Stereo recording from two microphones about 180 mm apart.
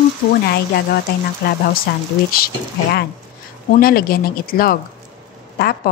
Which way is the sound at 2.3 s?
60° left (ahead or behind).